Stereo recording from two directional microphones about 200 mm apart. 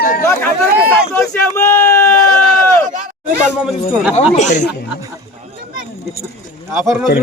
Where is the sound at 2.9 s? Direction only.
40° right (ahead or behind).